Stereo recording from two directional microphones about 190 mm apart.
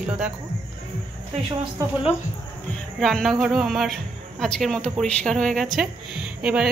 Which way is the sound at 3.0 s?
Centre (ahead or behind).